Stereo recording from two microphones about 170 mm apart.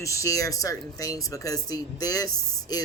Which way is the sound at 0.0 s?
20° left (ahead or behind).